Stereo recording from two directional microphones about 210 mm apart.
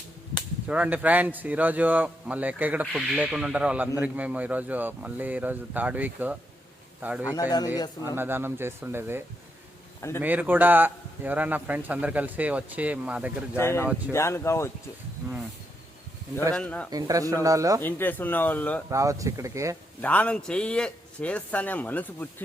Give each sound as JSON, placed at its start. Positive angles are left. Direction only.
{"t": 0.7, "sound": "a man's voice", "side_deg": -5}
{"t": 7.3, "sound": "a man's voice", "side_deg": 15}
{"t": 8.1, "sound": "a man's voice", "side_deg": -10}
{"t": 13.6, "sound": "a man's voice", "side_deg": 10}
{"t": 16.6, "sound": "a man's voice", "side_deg": 5}
{"t": 16.9, "sound": "a man's voice", "side_deg": -15}
{"t": 17.7, "sound": "a man's voice", "side_deg": 10}
{"t": 18.9, "sound": "a man's voice", "side_deg": -15}
{"t": 20.0, "sound": "a man's voice", "side_deg": 5}